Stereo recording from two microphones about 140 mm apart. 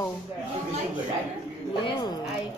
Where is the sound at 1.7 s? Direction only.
30° left (ahead or behind).